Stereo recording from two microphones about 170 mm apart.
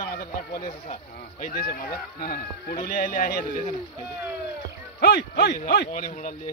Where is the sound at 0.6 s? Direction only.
40° left (ahead or behind).